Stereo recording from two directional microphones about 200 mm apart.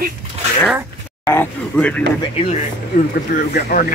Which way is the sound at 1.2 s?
10° left (ahead or behind).